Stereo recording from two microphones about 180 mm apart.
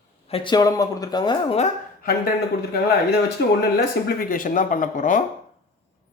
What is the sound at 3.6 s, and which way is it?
Speech, 55° left (ahead or behind).